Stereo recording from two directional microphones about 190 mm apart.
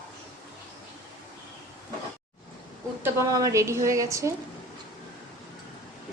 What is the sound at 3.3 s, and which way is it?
A woman's voice, 15° right (ahead or behind).